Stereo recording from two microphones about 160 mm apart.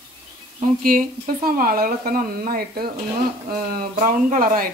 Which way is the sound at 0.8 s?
60° right (ahead or behind).